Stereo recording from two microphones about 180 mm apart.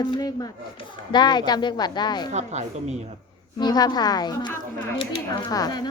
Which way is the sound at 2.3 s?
40° right (ahead or behind).